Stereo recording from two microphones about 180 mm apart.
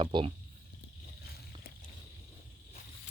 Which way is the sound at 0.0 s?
25° right (ahead or behind).